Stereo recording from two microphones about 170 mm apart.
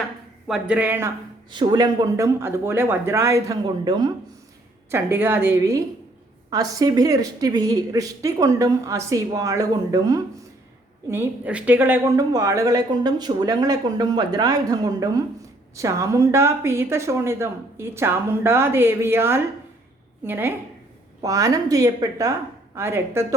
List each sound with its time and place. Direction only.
0.4 s speech: 5° right (ahead or behind)
1.5 s a woman's voice: 25° right (ahead or behind)